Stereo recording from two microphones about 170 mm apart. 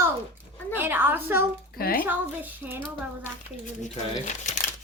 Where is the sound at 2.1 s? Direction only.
10° right (ahead or behind).